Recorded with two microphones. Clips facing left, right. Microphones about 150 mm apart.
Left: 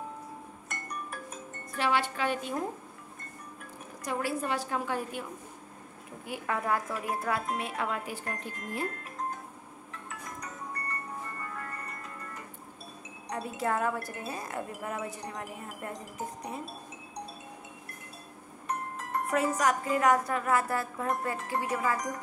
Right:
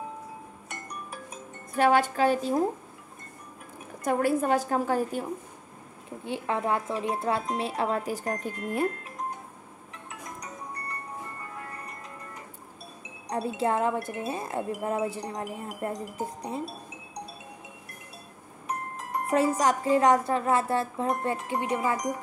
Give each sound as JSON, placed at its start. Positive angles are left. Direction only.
{"t": 1.8, "sound": "music", "side_deg": -45}
{"t": 4.0, "sound": "a woman's voice", "side_deg": -50}
{"t": 6.2, "sound": "speech", "side_deg": -25}
{"t": 13.3, "sound": "speech", "side_deg": -30}
{"t": 18.7, "sound": "music", "side_deg": -10}
{"t": 19.3, "sound": "speech", "side_deg": -30}